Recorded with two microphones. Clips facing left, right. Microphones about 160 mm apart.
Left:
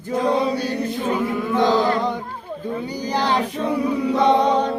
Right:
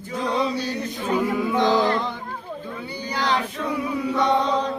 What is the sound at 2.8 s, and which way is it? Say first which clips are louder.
Child singing: left 2 dB; 40° left (ahead or behind).